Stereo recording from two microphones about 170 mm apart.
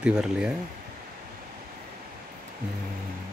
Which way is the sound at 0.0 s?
5° right (ahead or behind).